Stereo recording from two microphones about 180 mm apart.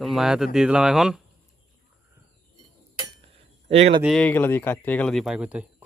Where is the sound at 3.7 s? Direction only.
35° right (ahead or behind).